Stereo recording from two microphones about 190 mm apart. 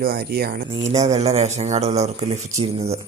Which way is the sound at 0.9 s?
35° right (ahead or behind).